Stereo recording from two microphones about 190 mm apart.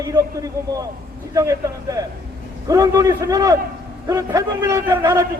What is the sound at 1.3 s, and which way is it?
A man's voice, 15° right (ahead or behind).